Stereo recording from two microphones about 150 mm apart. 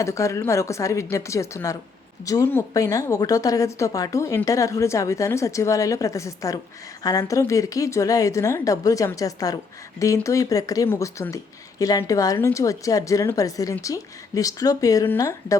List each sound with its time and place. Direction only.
0.0 s speech: 20° left (ahead or behind)